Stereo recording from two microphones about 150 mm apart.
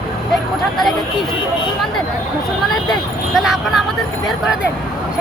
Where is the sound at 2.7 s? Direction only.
Centre (ahead or behind).